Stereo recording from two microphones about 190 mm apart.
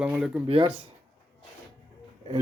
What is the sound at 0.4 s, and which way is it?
Speech, 30° right (ahead or behind).